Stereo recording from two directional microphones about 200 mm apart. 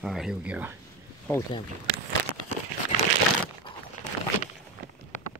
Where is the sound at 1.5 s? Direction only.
25° left (ahead or behind).